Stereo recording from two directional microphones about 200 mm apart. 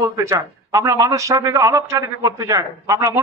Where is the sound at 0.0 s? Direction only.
15° right (ahead or behind).